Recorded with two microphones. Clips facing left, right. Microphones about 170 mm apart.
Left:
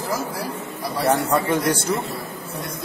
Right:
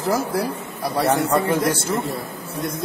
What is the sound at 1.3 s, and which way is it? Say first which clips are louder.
Speech: right 1 dB; centre (ahead or behind).